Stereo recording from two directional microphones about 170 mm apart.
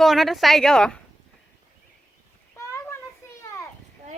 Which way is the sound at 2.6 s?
15° left (ahead or behind).